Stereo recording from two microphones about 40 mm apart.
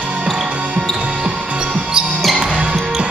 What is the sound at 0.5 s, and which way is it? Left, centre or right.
Music, right.